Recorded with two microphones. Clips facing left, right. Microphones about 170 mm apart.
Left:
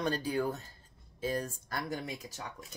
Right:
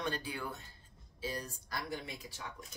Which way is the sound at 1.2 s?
50° left (ahead or behind).